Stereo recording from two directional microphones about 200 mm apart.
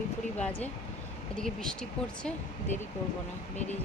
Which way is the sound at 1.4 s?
5° left (ahead or behind).